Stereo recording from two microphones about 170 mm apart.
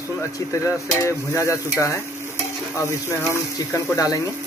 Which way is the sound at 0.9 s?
15° left (ahead or behind).